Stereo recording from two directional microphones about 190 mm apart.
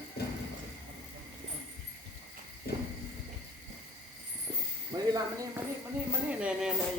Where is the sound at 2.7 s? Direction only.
55° left (ahead or behind).